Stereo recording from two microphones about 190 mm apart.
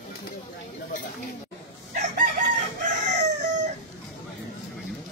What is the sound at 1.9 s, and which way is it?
Chicken, 40° right (ahead or behind).